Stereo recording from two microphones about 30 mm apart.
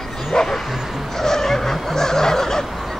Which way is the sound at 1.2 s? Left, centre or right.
Centre.